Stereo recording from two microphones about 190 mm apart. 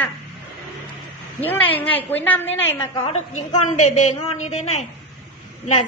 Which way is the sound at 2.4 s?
75° left (ahead or behind).